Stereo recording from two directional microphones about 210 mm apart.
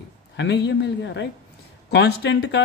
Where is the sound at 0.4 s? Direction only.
55° left (ahead or behind).